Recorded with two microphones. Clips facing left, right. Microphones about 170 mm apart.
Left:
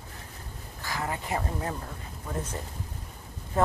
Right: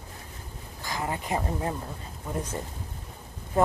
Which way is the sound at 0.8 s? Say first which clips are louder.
Right 1 dB; 20° right (ahead or behind).